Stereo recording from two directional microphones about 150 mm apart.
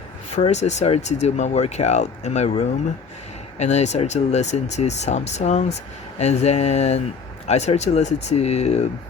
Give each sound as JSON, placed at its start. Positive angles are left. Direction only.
{"t": 0.3, "sound": "speech", "side_deg": 50}